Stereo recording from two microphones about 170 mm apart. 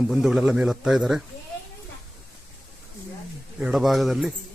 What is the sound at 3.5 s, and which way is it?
Speech, 5° right (ahead or behind).